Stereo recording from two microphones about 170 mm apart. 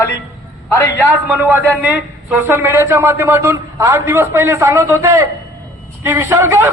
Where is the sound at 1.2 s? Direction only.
10° right (ahead or behind).